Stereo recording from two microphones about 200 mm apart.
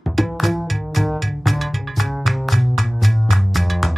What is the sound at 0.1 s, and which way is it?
Music, centre (ahead or behind).